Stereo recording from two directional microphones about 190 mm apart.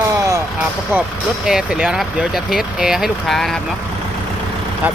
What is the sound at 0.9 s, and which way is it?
Speech, 10° right (ahead or behind).